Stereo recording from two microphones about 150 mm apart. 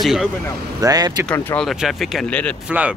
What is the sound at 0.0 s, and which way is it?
Speech, centre (ahead or behind).